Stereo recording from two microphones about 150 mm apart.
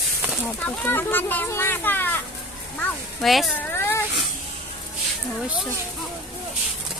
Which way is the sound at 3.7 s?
15° left (ahead or behind).